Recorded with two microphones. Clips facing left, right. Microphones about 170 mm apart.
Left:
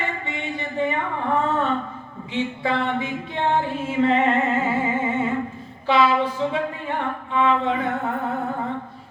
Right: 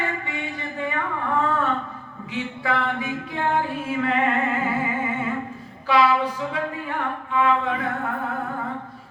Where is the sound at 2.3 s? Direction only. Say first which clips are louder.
Left 2 dB; 25° left (ahead or behind).